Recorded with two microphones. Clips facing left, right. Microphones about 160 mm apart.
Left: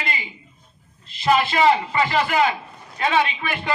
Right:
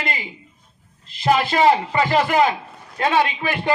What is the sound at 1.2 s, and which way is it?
A man's voice, 40° right (ahead or behind).